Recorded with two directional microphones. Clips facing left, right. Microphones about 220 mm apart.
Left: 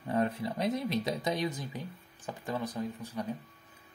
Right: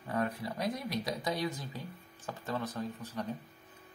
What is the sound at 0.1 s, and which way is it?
Speech, 25° left (ahead or behind).